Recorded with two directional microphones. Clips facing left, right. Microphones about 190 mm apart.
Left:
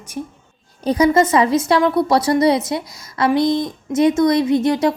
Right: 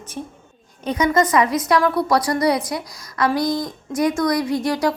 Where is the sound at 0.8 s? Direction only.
35° left (ahead or behind).